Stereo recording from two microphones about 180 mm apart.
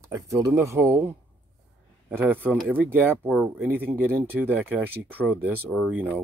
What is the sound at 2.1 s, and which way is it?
Speech, 10° right (ahead or behind).